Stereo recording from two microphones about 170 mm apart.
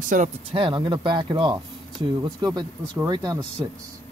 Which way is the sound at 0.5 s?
30° right (ahead or behind).